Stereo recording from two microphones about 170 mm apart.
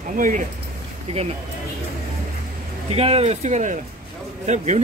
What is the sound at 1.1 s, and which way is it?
Speech, 40° right (ahead or behind).